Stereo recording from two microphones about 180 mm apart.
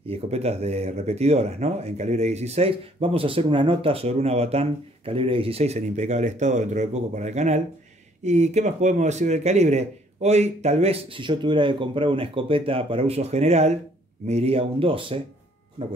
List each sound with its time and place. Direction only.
0.0 s speech: 35° right (ahead or behind)